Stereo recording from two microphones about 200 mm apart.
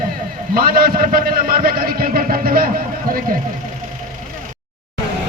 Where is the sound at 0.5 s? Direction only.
50° right (ahead or behind).